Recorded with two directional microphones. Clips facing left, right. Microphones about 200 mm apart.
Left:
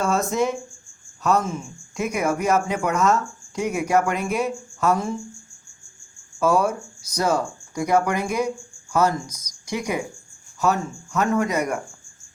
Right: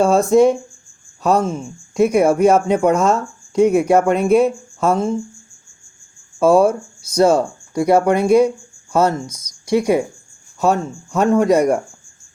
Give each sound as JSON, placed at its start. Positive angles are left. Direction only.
{"t": 0.0, "sound": "speech", "side_deg": -30}
{"t": 6.4, "sound": "speech", "side_deg": -30}